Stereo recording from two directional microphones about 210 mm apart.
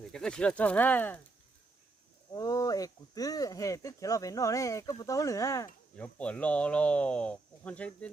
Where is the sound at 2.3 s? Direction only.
15° left (ahead or behind).